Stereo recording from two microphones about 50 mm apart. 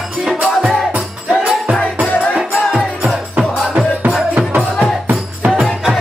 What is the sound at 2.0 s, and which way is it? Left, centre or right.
Music, left.